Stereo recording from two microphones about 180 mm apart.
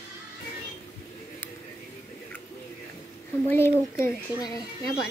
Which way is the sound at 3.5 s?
15° left (ahead or behind).